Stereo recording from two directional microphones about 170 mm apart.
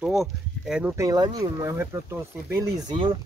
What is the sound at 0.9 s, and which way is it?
Speech, 20° right (ahead or behind).